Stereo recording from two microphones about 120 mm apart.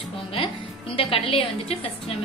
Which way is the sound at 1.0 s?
50° left (ahead or behind).